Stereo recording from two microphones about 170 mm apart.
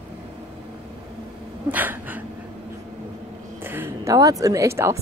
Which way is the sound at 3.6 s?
15° right (ahead or behind).